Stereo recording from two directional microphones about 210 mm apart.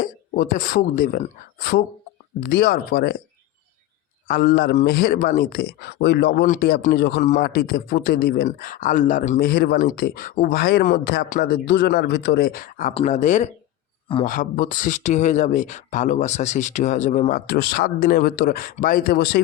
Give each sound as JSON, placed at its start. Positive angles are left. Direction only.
{"t": 0.0, "sound": "a woman's voice", "side_deg": 40}
{"t": 4.3, "sound": "speech", "side_deg": 45}
{"t": 7.2, "sound": "speech", "side_deg": 35}
{"t": 7.4, "sound": "speech", "side_deg": 45}